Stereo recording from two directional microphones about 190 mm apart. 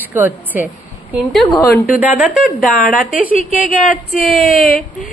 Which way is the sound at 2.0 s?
5° right (ahead or behind).